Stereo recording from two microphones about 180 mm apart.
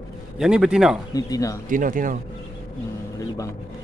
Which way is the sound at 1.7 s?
45° right (ahead or behind).